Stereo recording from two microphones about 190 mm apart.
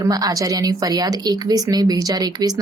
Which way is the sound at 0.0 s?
20° right (ahead or behind).